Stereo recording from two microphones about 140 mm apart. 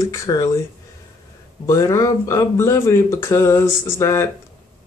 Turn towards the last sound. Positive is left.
turn(degrees=20)  # may be behind; listen again after turning